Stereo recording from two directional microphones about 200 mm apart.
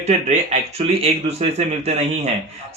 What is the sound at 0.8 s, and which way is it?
Speech, 30° right (ahead or behind).